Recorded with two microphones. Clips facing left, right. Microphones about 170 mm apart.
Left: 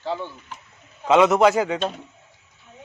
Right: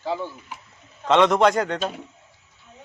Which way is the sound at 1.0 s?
5° left (ahead or behind).